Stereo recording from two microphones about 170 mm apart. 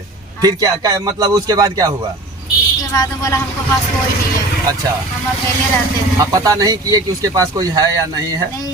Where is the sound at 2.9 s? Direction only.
20° left (ahead or behind).